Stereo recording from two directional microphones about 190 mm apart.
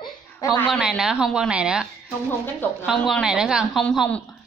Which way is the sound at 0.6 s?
Centre (ahead or behind).